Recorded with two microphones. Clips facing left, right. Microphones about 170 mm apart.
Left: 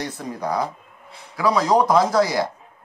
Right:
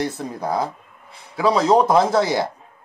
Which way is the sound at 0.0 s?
25° right (ahead or behind).